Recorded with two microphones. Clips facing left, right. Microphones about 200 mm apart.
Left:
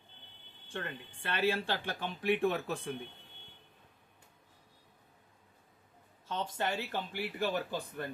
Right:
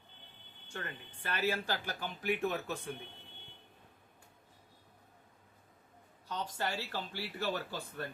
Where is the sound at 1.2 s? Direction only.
30° left (ahead or behind).